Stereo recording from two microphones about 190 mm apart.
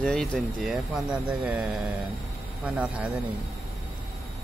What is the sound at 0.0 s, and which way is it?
Speech, centre (ahead or behind).